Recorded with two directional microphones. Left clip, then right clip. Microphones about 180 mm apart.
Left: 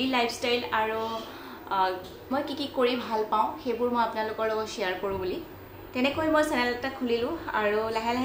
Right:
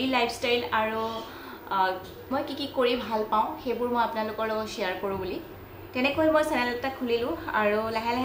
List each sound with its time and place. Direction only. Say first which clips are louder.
0.1 s a woman's voice: right 3 dB; centre (ahead or behind)